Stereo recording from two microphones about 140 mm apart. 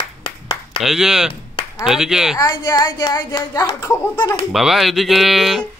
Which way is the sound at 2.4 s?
30° left (ahead or behind).